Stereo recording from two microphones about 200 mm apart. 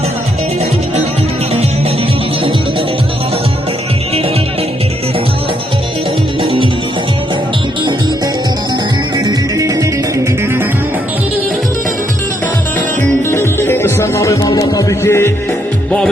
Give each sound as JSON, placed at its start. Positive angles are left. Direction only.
{"t": 6.4, "sound": "music", "side_deg": -25}
{"t": 9.1, "sound": "music", "side_deg": -15}
{"t": 13.3, "sound": "music", "side_deg": 10}